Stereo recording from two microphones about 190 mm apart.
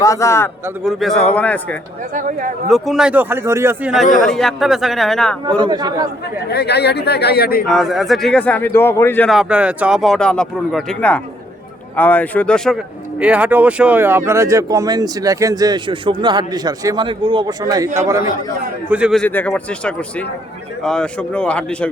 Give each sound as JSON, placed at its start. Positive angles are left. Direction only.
{"t": 0.0, "sound": "a man's voice", "side_deg": 15}
{"t": 0.9, "sound": "speech", "side_deg": 0}
{"t": 2.1, "sound": "speech", "side_deg": -45}
{"t": 2.6, "sound": "speech", "side_deg": 0}
{"t": 4.0, "sound": "speech", "side_deg": 40}
{"t": 4.3, "sound": "speech", "side_deg": 0}
{"t": 5.5, "sound": "a man's voice", "side_deg": -25}
{"t": 6.5, "sound": "speech", "side_deg": 60}
{"t": 7.7, "sound": "a man's voice", "side_deg": 0}
{"t": 9.3, "sound": "speech", "side_deg": -5}
{"t": 18.9, "sound": "speech", "side_deg": -5}
{"t": 19.2, "sound": "a man's voice", "side_deg": 10}